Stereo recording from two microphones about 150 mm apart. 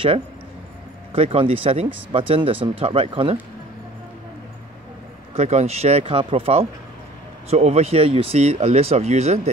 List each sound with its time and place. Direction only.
1.1 s speech: 40° right (ahead or behind)
5.3 s speech: 45° right (ahead or behind)